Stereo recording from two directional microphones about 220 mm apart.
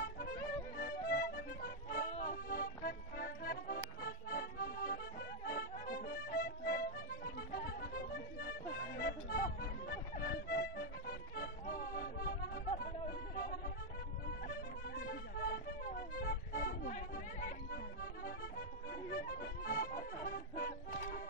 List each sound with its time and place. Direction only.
0.0 s music: 40° left (ahead or behind)
8.9 s accordion: 45° left (ahead or behind)
14.5 s music: 45° left (ahead or behind)